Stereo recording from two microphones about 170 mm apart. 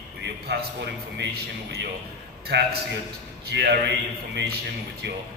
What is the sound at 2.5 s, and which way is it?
Speech, 85° right.